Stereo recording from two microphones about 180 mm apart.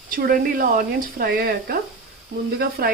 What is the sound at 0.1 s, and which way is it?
Speech, 55° right (ahead or behind).